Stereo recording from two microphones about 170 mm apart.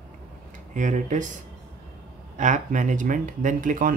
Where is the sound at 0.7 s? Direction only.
45° right (ahead or behind).